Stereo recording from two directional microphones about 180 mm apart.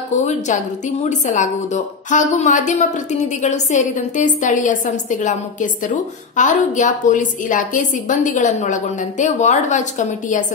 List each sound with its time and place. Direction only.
0.2 s a woman's voice: 40° left (ahead or behind)